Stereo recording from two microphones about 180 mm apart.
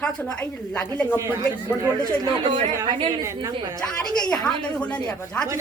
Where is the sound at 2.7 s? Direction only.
20° right (ahead or behind).